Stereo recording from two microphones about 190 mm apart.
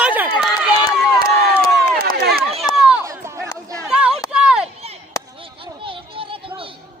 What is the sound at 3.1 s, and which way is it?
Chatter, 15° right (ahead or behind).